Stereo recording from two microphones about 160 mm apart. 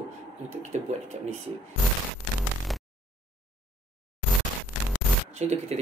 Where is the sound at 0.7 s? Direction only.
45° right (ahead or behind).